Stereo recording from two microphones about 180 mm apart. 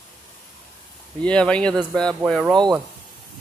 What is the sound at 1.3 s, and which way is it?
Speech, 5° left (ahead or behind).